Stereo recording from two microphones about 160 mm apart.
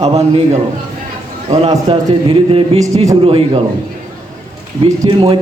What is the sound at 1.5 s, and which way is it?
A man's voice, 25° right (ahead or behind).